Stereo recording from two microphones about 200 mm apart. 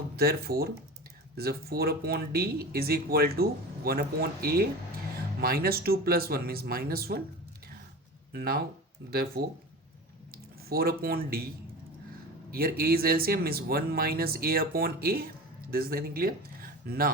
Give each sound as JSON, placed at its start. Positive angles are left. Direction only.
{"t": 0.2, "sound": "speech", "side_deg": -50}
{"t": 8.3, "sound": "speech", "side_deg": -50}
{"t": 12.5, "sound": "speech", "side_deg": -50}